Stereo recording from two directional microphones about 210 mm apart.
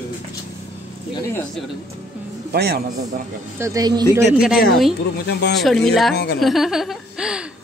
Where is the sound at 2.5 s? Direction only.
50° right (ahead or behind).